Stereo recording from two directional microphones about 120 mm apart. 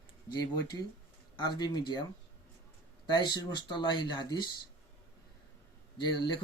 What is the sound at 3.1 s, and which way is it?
Speech, 35° left (ahead or behind).